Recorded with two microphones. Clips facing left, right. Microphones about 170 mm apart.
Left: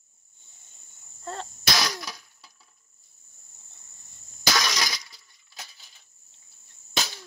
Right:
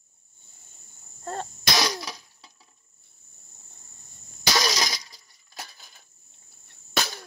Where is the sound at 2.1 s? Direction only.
30° right (ahead or behind).